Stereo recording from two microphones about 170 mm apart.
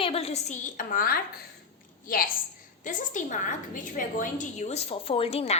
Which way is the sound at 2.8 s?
50° left (ahead or behind).